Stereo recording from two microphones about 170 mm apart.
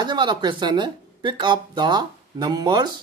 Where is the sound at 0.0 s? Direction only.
25° right (ahead or behind).